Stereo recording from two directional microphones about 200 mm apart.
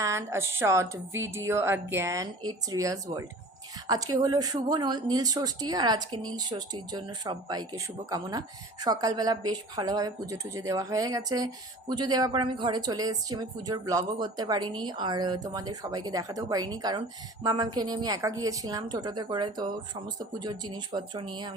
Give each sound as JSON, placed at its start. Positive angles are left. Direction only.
{"t": 0.0, "sound": "speech", "side_deg": -15}